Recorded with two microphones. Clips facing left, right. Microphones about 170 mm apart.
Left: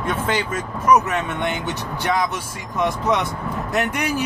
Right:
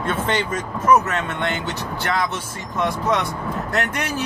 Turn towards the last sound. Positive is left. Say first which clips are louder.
# left 2 dB
turn(degrees=15)  # may be behind; listen again after turning